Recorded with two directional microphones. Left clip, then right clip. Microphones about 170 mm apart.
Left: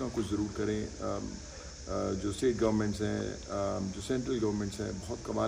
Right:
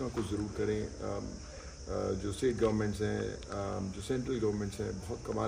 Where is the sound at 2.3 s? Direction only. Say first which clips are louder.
Left 2 dB; 10° left (ahead or behind).